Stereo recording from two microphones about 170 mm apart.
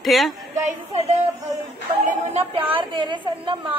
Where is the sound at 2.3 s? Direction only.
35° right (ahead or behind).